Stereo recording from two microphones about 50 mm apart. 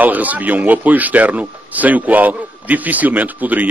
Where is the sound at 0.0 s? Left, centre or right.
Right.